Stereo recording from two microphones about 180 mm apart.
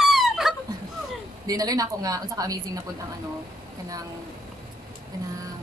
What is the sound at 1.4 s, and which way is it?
Speech, 20° right (ahead or behind).